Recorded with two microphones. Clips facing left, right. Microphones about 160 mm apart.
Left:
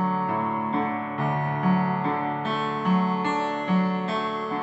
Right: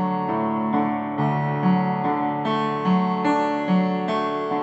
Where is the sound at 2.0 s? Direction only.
40° right (ahead or behind).